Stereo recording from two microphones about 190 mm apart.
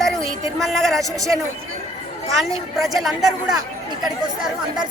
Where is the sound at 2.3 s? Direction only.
Centre (ahead or behind).